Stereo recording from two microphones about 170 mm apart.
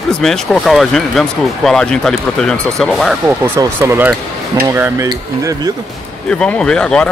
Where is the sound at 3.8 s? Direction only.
10° right (ahead or behind).